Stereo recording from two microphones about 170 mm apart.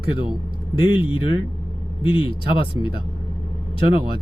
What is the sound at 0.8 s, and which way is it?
Speech, 30° left (ahead or behind).